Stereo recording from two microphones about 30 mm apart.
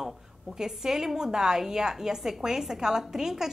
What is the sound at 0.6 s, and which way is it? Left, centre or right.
A woman's voice, centre.